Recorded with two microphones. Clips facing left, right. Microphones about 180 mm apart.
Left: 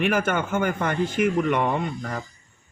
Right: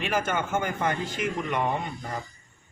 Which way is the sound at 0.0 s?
55° left (ahead or behind).